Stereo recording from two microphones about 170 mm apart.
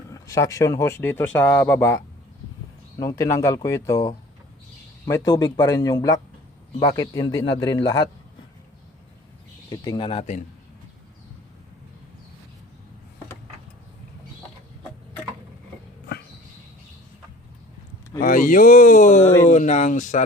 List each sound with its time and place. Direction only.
0.1 s speech: 20° left (ahead or behind)
3.0 s speech: 20° left (ahead or behind)
9.6 s speech: 25° left (ahead or behind)
18.2 s speech: 55° left (ahead or behind)